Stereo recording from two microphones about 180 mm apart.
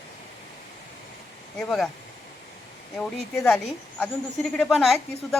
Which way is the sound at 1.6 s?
Centre (ahead or behind).